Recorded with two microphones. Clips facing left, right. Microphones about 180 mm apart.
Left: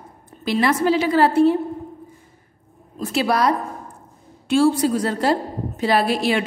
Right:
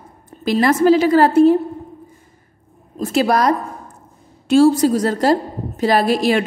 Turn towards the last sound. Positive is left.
turn(degrees=-40)  # may be behind; listen again after turning